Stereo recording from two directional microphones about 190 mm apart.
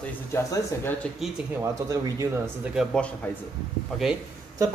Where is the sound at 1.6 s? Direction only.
15° right (ahead or behind); by 3.1 s centre (ahead or behind).